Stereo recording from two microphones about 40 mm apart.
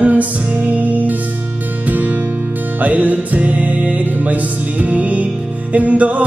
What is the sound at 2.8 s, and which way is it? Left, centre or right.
Music, right.